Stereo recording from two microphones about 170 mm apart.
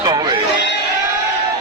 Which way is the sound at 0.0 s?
25° right (ahead or behind).